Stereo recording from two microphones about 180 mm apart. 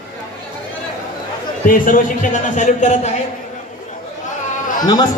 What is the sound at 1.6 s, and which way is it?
Speech, 50° left (ahead or behind).